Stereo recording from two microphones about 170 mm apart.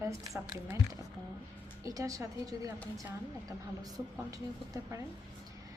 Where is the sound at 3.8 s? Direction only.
20° right (ahead or behind).